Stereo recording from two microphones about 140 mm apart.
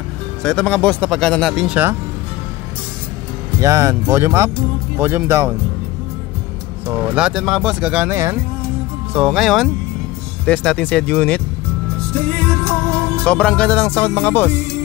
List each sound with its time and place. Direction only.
0.4 s speech: 5° left (ahead or behind)
3.6 s speech: 20° right (ahead or behind)
7.2 s speech: 5° right (ahead or behind)
9.1 s speech: 5° right (ahead or behind)
13.2 s speech: 5° left (ahead or behind)